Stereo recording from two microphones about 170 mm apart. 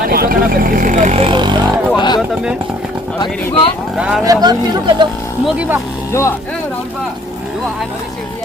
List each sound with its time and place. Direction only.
0.1 s speech: 60° right (ahead or behind); by 1.8 s 25° right (ahead or behind)
2.0 s a sound: 25° left (ahead or behind)
3.9 s speech: 5° right (ahead or behind)
4.2 s speech: 20° right (ahead or behind)
5.5 s speech: 10° right (ahead or behind)
6.1 s speech: 15° left (ahead or behind)